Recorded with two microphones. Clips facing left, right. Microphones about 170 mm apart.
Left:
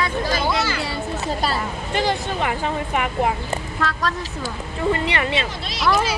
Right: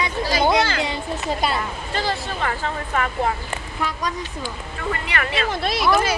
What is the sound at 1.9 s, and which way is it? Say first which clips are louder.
Speech: left 4 dB; 15° left (ahead or behind).